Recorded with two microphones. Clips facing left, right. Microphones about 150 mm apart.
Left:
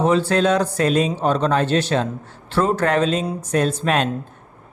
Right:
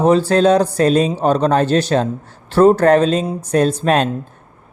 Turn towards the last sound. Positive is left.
turn(degrees=-40)  # may be behind; listen again after turning